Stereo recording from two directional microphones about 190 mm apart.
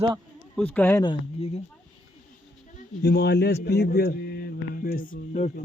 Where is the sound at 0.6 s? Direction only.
10° left (ahead or behind).